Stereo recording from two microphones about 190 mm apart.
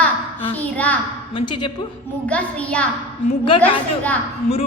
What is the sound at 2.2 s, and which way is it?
A woman's voice, 5° left (ahead or behind).